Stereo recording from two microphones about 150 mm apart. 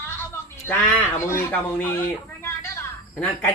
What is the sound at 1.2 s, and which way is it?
Speech, 15° left (ahead or behind).